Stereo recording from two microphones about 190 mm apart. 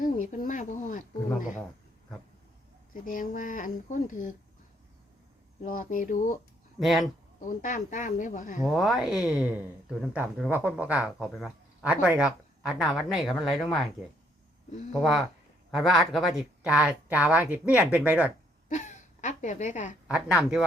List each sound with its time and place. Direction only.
0.0 s speech: 45° left (ahead or behind)
2.9 s speech: 45° left (ahead or behind)
5.6 s speech: 45° left (ahead or behind)
6.7 s speech: centre (ahead or behind)
7.0 s speech: 45° left (ahead or behind)
8.6 s speech: centre (ahead or behind)
14.9 s speech: centre (ahead or behind)
18.7 s a woman's voice: 40° left (ahead or behind)
20.1 s speech: 5° right (ahead or behind)